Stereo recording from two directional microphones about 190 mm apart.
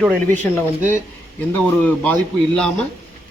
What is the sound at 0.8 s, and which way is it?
Speech, 40° right (ahead or behind).